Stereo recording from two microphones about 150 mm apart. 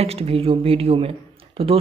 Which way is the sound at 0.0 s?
40° right (ahead or behind).